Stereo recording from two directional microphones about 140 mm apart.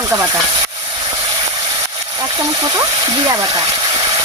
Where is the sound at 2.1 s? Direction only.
25° right (ahead or behind).